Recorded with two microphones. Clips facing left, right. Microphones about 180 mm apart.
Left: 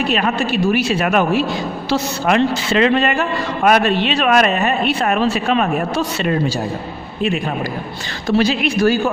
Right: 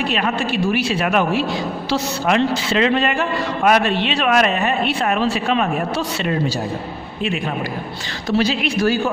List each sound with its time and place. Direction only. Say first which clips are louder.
0.1 s a man's voice: left 3 dB; 45° left (ahead or behind)
8.3 s a man's voice: left 3 dB; 50° left (ahead or behind)